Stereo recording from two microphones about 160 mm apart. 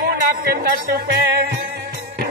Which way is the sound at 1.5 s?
90° right.